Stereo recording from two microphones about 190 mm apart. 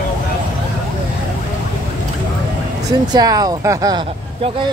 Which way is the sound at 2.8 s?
20° right (ahead or behind).